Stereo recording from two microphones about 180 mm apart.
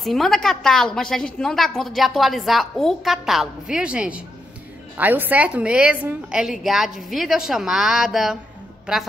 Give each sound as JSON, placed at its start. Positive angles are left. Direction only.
{"t": 0.0, "sound": "a woman's voice", "side_deg": 0}